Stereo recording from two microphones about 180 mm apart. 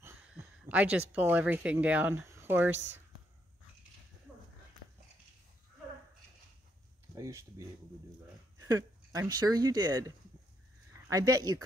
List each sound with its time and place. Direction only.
0.0 s a sound: 10° right (ahead or behind)
1.1 s speech: 10° right (ahead or behind)
7.2 s speech: 20° right (ahead or behind)